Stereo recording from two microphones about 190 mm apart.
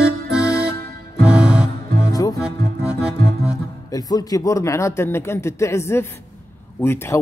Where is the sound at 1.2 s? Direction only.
5° right (ahead or behind).